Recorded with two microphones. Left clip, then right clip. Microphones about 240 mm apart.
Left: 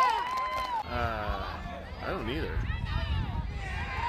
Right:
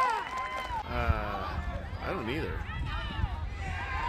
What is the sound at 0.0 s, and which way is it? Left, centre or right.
Run, left.